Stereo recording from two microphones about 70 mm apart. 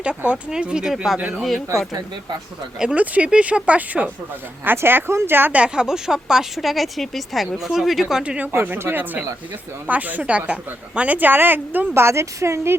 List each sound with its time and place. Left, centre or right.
0.5 s speech: centre
2.9 s a woman's voice: centre
5.5 s speech: centre
8.2 s speech: centre
8.6 s a woman's voice: right
12.0 s a woman's voice: right